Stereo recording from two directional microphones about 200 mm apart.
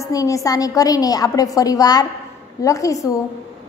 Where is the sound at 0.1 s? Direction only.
15° left (ahead or behind).